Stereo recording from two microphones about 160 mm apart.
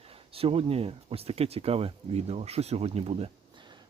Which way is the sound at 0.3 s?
35° right (ahead or behind).